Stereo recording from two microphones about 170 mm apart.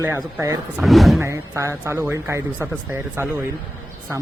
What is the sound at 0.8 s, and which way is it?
Speech, centre (ahead or behind).